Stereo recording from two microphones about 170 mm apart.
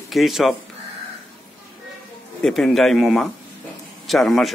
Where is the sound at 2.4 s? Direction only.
Centre (ahead or behind).